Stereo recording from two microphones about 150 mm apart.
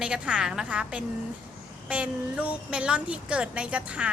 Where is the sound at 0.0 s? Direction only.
5° right (ahead or behind).